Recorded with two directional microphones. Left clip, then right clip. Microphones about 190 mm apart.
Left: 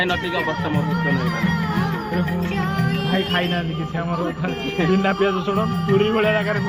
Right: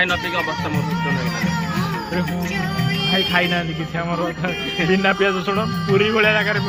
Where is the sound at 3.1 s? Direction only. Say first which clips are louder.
Right 4 dB; 15° right (ahead or behind).